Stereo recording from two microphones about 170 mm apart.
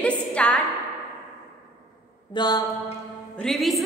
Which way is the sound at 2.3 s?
25° left (ahead or behind).